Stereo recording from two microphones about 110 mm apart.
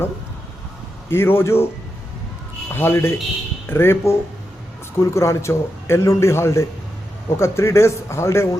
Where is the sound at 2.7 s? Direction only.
20° left (ahead or behind).